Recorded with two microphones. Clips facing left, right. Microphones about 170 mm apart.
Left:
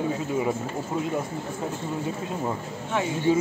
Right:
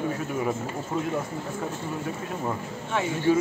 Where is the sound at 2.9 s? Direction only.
15° left (ahead or behind).